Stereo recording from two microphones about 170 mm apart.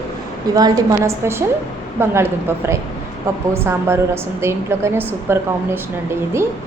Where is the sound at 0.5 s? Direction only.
20° right (ahead or behind).